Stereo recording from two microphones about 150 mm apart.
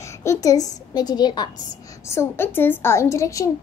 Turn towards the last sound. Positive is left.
turn(degrees=20)  # may be behind; listen again after turning